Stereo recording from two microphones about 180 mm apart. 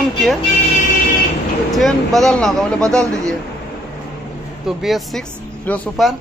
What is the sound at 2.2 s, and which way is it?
Speech, 5° left (ahead or behind).